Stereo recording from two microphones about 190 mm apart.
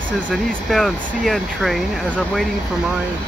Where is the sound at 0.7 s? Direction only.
Centre (ahead or behind).